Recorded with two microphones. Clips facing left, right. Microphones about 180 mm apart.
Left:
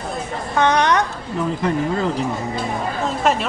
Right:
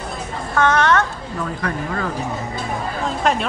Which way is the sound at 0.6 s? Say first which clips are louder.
Even; 15° left (ahead or behind).